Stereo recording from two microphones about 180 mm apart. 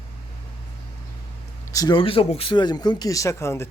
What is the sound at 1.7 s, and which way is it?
Speech, 20° left (ahead or behind).